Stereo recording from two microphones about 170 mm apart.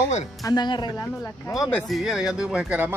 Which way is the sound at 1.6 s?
Centre (ahead or behind).